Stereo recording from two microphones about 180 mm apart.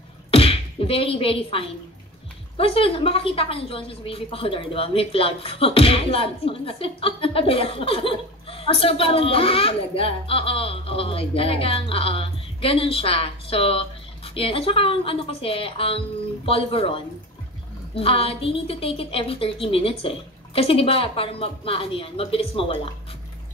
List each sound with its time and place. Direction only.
0.3 s beatboxing: 30° left (ahead or behind)
2.5 s a woman's voice: 30° left (ahead or behind)